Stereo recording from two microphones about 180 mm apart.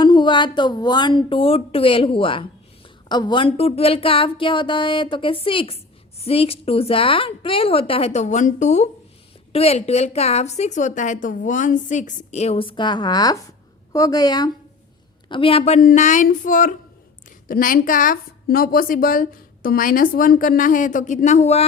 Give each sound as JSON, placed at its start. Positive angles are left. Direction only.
{"t": 0.0, "sound": "a woman's voice", "side_deg": 25}